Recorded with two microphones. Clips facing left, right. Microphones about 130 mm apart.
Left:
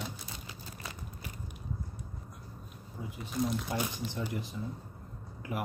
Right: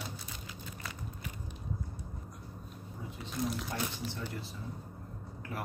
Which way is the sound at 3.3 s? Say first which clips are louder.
Left 3 dB; centre (ahead or behind).